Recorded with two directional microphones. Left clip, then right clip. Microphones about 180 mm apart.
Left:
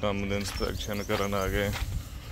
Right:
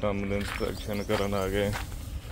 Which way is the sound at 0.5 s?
5° right (ahead or behind).